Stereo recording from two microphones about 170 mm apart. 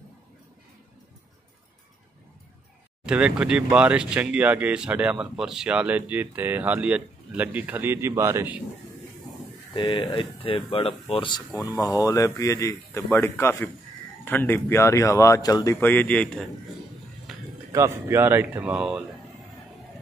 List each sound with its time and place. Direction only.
3.1 s speech: 5° right (ahead or behind)
9.8 s speech: 30° left (ahead or behind)
11.5 s a man's voice: 20° left (ahead or behind)
17.3 s music: centre (ahead or behind)
17.7 s speech: 15° right (ahead or behind)